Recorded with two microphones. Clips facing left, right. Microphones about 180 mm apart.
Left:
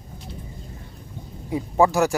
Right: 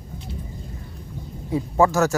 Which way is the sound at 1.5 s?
15° left (ahead or behind).